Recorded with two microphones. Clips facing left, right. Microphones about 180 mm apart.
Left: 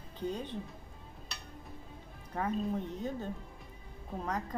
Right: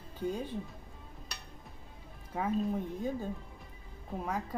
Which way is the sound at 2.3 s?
5° right (ahead or behind).